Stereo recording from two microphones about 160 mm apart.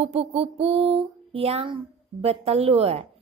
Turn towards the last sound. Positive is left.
turn(degrees=-40)  # may be behind; listen again after turning